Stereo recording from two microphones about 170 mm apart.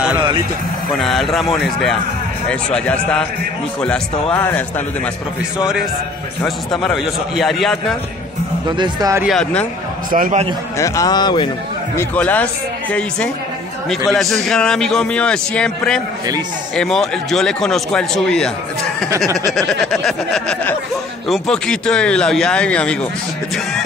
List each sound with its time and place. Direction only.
0.9 s a man's voice: centre (ahead or behind)
6.4 s a man's voice: centre (ahead or behind)
8.6 s speech: 25° right (ahead or behind)
9.3 s a man's voice: 5° left (ahead or behind)
10.1 s a man's voice: 55° right (ahead or behind)
10.8 s speech: 20° left (ahead or behind)
12.0 s speech: 10° left (ahead or behind)
13.8 s a man's voice: centre (ahead or behind)
19.0 s speech: 20° right (ahead or behind)
19.5 s a man's voice: centre (ahead or behind)